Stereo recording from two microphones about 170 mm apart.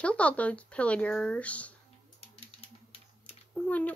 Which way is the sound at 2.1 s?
35° left (ahead or behind).